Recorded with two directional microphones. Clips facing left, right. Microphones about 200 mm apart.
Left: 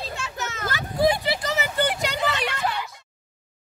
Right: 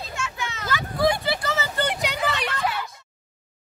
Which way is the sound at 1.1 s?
20° left (ahead or behind).